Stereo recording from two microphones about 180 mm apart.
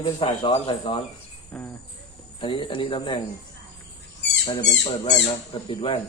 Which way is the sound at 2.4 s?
30° left (ahead or behind).